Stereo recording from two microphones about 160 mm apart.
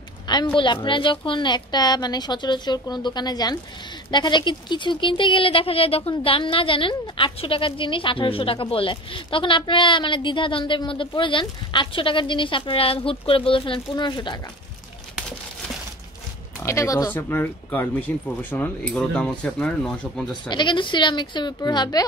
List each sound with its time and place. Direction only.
0.3 s a sound: 25° left (ahead or behind)
0.8 s a woman's voice: 30° left (ahead or behind)
16.6 s speech: 20° left (ahead or behind)
20.4 s a woman's voice: 30° left (ahead or behind)